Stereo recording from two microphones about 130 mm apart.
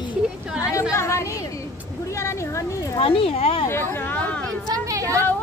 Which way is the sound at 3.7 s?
15° left (ahead or behind).